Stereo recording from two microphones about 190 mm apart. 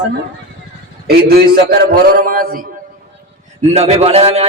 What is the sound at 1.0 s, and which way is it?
A man's voice, 55° right (ahead or behind).